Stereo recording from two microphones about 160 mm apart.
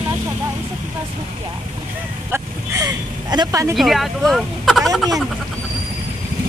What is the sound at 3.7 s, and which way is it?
Speech, centre (ahead or behind).